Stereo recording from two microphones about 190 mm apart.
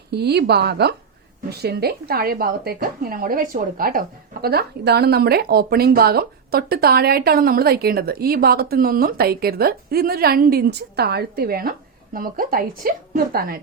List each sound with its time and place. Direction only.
0.1 s a woman's voice: 60° right (ahead or behind)